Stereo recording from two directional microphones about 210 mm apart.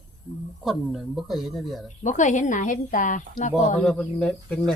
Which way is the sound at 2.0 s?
35° left (ahead or behind).